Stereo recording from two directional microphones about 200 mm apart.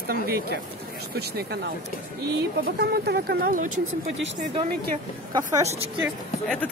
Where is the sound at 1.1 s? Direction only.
50° right (ahead or behind).